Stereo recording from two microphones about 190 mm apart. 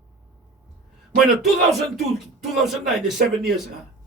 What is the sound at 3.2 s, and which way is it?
Speech, 55° right (ahead or behind).